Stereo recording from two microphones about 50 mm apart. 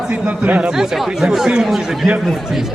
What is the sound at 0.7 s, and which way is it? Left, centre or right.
Speech, centre.